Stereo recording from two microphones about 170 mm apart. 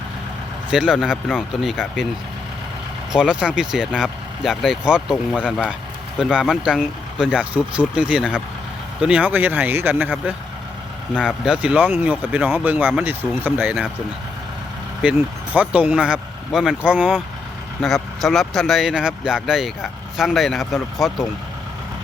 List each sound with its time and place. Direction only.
0.7 s speech: 5° right (ahead or behind)
3.1 s speech: 5° right (ahead or behind)
15.5 s speech: 10° right (ahead or behind)